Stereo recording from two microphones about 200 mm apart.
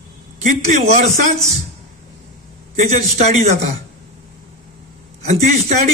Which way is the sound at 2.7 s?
35° right (ahead or behind).